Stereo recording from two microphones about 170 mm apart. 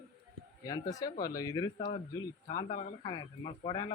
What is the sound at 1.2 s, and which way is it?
A man's voice, 20° left (ahead or behind).